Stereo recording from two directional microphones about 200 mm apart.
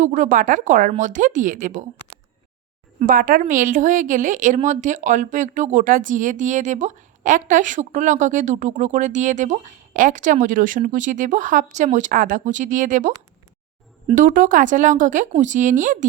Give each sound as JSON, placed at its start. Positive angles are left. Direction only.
{"t": 0.0, "sound": "a woman's voice", "side_deg": -35}
{"t": 3.0, "sound": "a woman's voice", "side_deg": -45}